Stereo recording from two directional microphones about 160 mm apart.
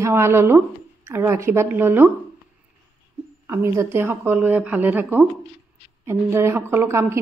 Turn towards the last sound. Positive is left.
turn(degrees=-15)  # may be behind; listen again after turning